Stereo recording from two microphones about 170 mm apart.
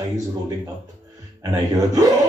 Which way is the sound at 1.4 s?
20° right (ahead or behind).